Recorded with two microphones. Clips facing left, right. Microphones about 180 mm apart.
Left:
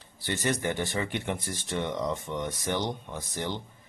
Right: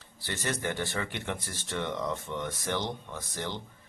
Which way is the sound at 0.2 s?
15° left (ahead or behind).